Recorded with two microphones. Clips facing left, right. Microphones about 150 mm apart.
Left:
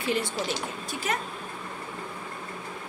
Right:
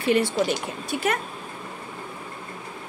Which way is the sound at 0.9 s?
60° right (ahead or behind).